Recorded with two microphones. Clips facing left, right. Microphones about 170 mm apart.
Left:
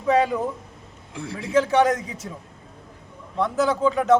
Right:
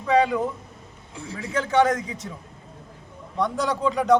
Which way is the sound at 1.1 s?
60° left (ahead or behind).